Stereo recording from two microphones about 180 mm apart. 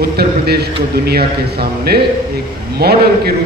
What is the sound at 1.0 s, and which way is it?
A man's voice, 60° right (ahead or behind).